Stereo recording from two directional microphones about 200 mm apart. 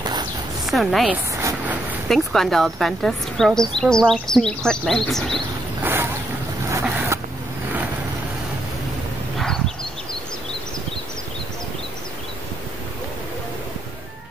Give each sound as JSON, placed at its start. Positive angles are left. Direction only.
{"t": 0.0, "sound": "a sound", "side_deg": -20}
{"t": 0.7, "sound": "speech", "side_deg": 0}
{"t": 2.0, "sound": "speech", "side_deg": 0}
{"t": 6.7, "sound": "boat", "side_deg": -10}